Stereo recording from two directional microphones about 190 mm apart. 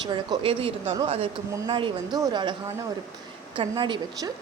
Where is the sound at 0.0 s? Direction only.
25° right (ahead or behind).